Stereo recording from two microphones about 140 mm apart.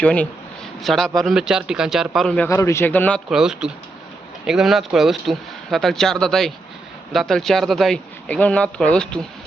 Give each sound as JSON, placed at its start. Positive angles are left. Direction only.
{"t": 0.0, "sound": "a man's voice", "side_deg": 10}
{"t": 2.5, "sound": "a man's voice", "side_deg": 20}
{"t": 3.2, "sound": "speech", "side_deg": -5}